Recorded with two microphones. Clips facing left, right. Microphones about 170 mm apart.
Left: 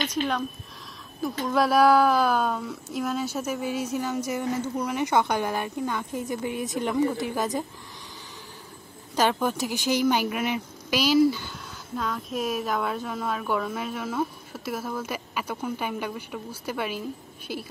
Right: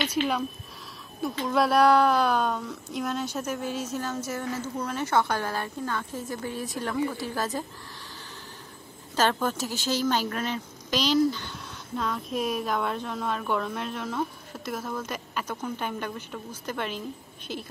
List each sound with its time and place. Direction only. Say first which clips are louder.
1.4 s speech: left 1 dB; centre (ahead or behind); by 7.6 s 15° left (ahead or behind)
9.1 s speech: left 1 dB; 15° left (ahead or behind)